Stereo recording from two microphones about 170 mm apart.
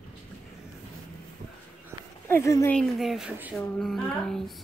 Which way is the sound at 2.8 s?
Centre (ahead or behind).